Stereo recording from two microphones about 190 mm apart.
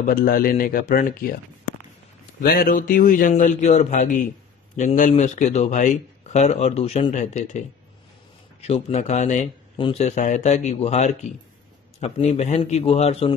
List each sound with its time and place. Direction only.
0.0 s a man's voice: 50° left (ahead or behind)
2.4 s a man's voice: 50° left (ahead or behind); by 13.3 s 30° left (ahead or behind)